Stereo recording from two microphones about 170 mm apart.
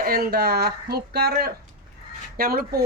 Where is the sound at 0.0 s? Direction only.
60° right (ahead or behind).